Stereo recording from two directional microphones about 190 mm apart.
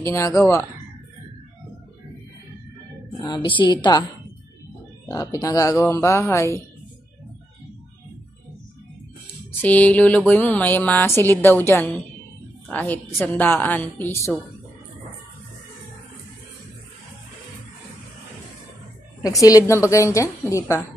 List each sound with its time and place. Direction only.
0.0 s a woman's voice: 15° left (ahead or behind)
3.4 s a woman's voice: 25° left (ahead or behind)
5.0 s a woman's voice: 15° left (ahead or behind)
9.6 s a woman's voice: 10° left (ahead or behind)
19.2 s a woman's voice: 20° left (ahead or behind)